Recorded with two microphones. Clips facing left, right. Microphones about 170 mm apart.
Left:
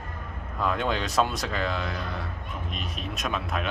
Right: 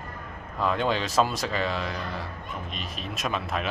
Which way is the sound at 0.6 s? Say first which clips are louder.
Right 1 dB; centre (ahead or behind).